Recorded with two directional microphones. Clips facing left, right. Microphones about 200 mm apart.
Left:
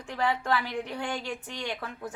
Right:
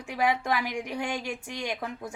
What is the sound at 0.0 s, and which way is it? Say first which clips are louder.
A woman's voice: right 2 dB; 10° right (ahead or behind).